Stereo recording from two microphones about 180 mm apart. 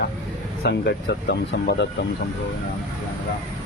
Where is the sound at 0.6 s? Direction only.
60° left (ahead or behind).